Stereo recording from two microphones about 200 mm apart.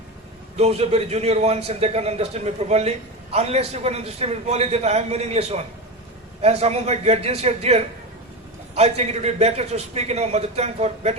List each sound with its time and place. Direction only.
0.5 s a man's voice: 30° right (ahead or behind)